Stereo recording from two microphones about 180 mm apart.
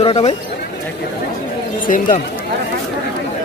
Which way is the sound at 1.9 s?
50° left (ahead or behind).